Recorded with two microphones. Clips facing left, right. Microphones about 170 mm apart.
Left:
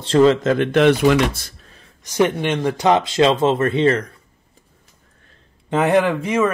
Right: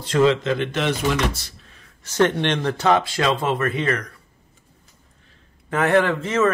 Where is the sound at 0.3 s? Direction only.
45° left (ahead or behind).